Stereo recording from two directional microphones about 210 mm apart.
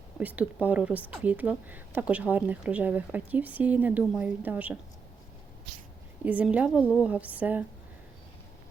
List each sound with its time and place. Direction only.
0.2 s speech: 5° right (ahead or behind)
6.2 s speech: 5° right (ahead or behind)